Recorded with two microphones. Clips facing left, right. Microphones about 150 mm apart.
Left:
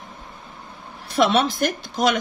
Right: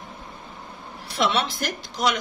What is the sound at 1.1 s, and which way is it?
Speech, 50° left (ahead or behind).